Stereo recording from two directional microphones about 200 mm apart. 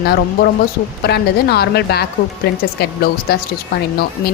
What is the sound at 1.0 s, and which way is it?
A woman's voice, 55° left (ahead or behind).